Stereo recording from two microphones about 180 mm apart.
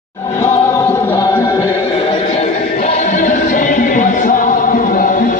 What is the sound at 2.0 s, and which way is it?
Music, 35° left (ahead or behind).